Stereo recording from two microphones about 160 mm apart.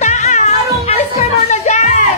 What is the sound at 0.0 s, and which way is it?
Music, 45° left (ahead or behind).